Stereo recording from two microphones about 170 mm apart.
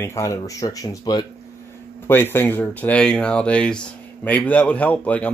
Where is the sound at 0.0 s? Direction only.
20° left (ahead or behind).